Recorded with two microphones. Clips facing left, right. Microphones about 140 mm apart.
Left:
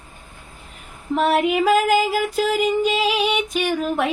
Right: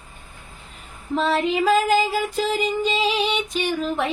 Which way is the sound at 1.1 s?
10° left (ahead or behind).